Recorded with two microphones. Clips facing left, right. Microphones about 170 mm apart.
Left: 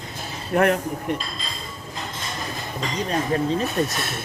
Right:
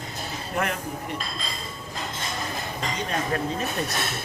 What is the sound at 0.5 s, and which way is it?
Speech, 55° left (ahead or behind).